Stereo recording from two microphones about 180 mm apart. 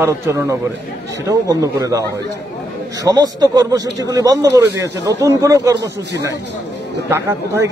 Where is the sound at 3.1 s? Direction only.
20° right (ahead or behind).